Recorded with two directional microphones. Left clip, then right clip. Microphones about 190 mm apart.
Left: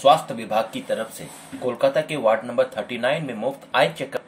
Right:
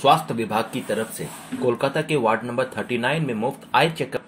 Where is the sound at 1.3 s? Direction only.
Centre (ahead or behind).